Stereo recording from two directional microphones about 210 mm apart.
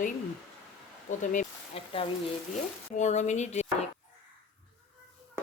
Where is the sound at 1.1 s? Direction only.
35° left (ahead or behind).